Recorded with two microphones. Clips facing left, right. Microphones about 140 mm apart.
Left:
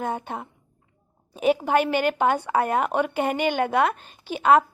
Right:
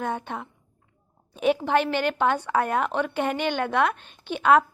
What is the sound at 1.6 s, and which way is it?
A woman's voice, 10° left (ahead or behind).